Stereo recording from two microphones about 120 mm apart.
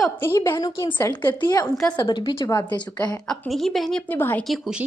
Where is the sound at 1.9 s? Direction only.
40° left (ahead or behind).